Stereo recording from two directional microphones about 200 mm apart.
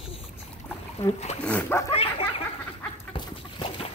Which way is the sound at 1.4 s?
10° left (ahead or behind).